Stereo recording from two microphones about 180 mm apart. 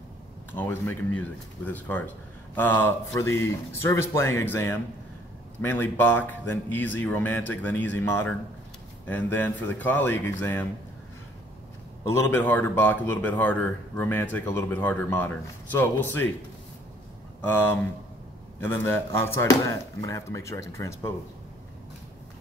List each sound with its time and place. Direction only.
0.5 s speech: 10° left (ahead or behind)
12.1 s speech: 15° left (ahead or behind)
17.4 s speech: 10° left (ahead or behind)